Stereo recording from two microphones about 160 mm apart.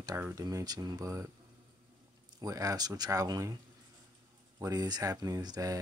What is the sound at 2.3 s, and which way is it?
Speech, 20° right (ahead or behind).